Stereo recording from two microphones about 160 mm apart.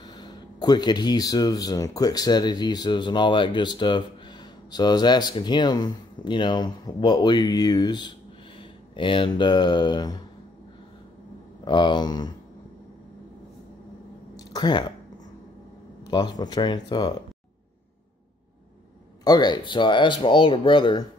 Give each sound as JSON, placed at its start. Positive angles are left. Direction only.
{"t": 0.0, "sound": "speech", "side_deg": 25}
{"t": 11.6, "sound": "speech", "side_deg": 30}
{"t": 14.5, "sound": "speech", "side_deg": 30}
{"t": 16.1, "sound": "speech", "side_deg": 25}
{"t": 19.2, "sound": "speech", "side_deg": 25}